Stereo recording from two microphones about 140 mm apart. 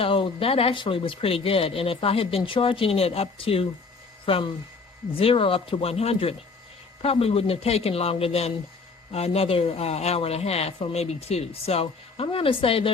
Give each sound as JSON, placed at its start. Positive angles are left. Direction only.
{"t": 0.0, "sound": "speech", "side_deg": 40}